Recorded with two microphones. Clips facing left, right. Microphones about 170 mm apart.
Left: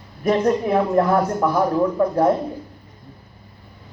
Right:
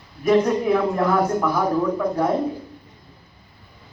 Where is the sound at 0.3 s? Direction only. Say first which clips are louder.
Right 1 dB; 45° left (ahead or behind).